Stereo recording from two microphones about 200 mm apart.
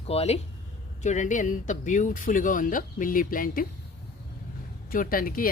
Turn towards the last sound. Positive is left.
turn(degrees=45)  # may be behind; listen again after turning